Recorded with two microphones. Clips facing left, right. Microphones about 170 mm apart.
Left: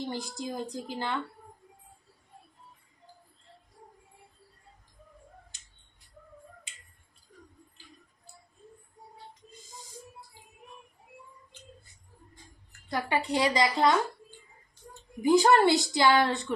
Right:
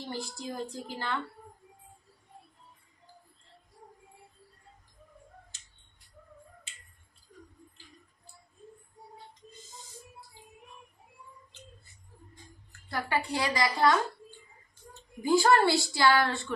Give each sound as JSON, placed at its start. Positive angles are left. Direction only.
{"t": 0.1, "sound": "a woman's voice", "side_deg": 20}
{"t": 12.9, "sound": "a woman's voice", "side_deg": 20}
{"t": 15.2, "sound": "a woman's voice", "side_deg": 20}